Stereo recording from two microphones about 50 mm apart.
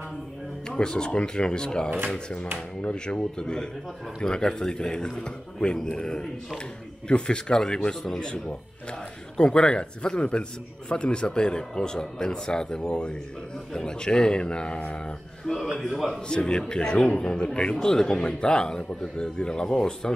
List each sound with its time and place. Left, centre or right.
0.7 s a man's voice: centre
9.4 s a man's voice: centre
15.4 s a man's voice: centre
16.1 s speech: centre